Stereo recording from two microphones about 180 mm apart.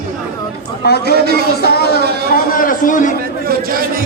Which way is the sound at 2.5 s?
50° left (ahead or behind).